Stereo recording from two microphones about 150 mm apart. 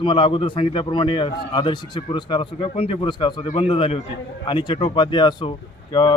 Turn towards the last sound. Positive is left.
turn(degrees=35)  # may be behind; listen again after turning